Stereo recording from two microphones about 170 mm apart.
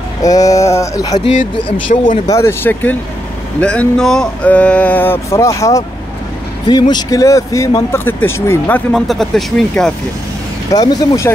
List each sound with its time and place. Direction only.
0.2 s speech: 20° left (ahead or behind)
1.1 s speech: 45° left (ahead or behind)
2.2 s speech: 15° left (ahead or behind)
10.7 s speech: 20° left (ahead or behind)